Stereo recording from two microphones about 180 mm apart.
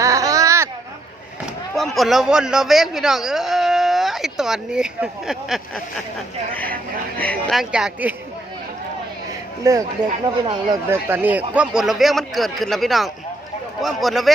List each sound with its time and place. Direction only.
0.0 s baby cry: 20° right (ahead or behind)
1.7 s a man's voice: centre (ahead or behind)
7.2 s speech: 5° left (ahead or behind)
9.7 s speech: 20° right (ahead or behind); by 14.3 s centre (ahead or behind)